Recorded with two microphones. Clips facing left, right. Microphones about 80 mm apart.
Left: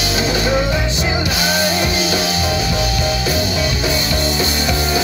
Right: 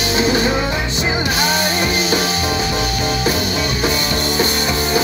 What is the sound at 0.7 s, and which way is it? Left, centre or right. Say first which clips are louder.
Music: left 1 dB; right.